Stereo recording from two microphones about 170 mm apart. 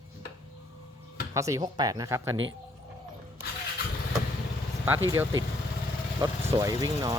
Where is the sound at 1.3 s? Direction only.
20° right (ahead or behind).